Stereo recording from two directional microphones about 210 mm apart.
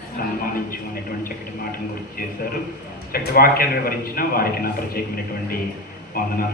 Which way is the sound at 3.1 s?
45° left (ahead or behind).